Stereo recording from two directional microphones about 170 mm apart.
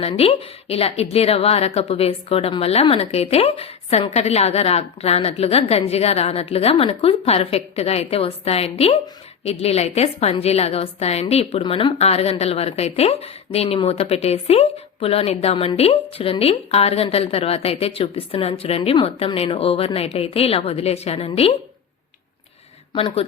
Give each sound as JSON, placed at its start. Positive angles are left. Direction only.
{"t": 0.0, "sound": "a woman's voice", "side_deg": 35}
{"t": 23.0, "sound": "a woman's voice", "side_deg": 35}